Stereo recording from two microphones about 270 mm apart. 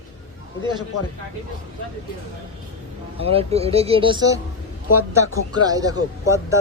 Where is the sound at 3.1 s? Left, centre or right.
Right.